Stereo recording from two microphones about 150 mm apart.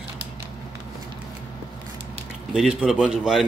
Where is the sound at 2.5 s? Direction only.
5° right (ahead or behind).